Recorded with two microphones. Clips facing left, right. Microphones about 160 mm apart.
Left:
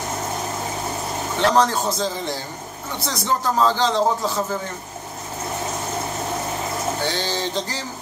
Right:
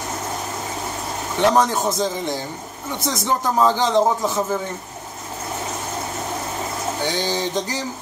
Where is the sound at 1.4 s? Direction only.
20° right (ahead or behind).